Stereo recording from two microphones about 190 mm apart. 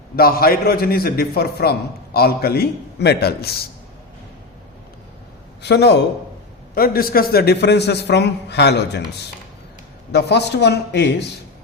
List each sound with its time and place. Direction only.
0.2 s a man's voice: 50° left (ahead or behind)
5.6 s a man's voice: 65° left (ahead or behind)
6.7 s a man's voice: 50° left (ahead or behind)
10.1 s a man's voice: 60° left (ahead or behind)